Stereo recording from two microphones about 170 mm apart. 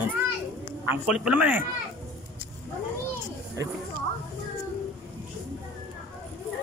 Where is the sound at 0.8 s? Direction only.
10° right (ahead or behind).